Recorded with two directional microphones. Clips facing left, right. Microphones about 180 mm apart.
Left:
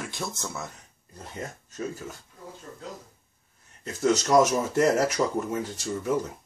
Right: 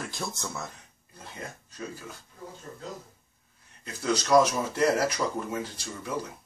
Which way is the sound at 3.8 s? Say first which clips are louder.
Left 5 dB; 45° left (ahead or behind).